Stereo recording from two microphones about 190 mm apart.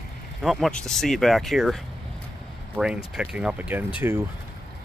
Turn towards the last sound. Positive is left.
turn(degrees=-10)  # may be behind; listen again after turning